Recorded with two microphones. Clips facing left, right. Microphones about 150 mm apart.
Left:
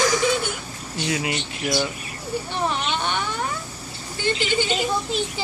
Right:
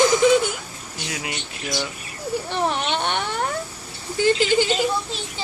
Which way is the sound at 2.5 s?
70° right (ahead or behind).